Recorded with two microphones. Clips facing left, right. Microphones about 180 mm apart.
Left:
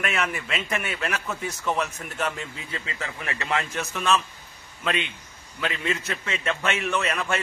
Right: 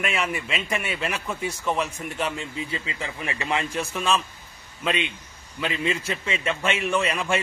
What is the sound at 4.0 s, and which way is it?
Speech, centre (ahead or behind).